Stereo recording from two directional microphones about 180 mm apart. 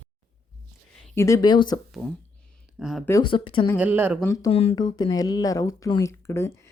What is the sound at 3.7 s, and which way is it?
Speech, 10° right (ahead or behind).